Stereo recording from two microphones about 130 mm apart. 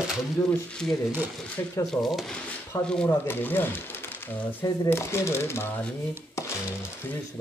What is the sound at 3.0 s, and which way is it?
Speech, 15° left (ahead or behind).